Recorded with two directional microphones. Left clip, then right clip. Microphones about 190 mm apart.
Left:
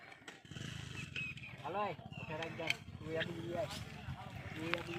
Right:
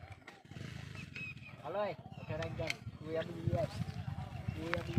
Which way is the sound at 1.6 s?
15° right (ahead or behind).